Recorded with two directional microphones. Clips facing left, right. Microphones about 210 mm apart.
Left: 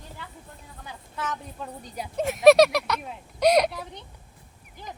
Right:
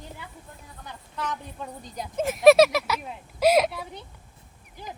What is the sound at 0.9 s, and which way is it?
A woman's voice, 5° left (ahead or behind).